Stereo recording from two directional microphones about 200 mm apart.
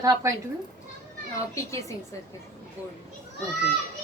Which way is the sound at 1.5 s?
15° left (ahead or behind).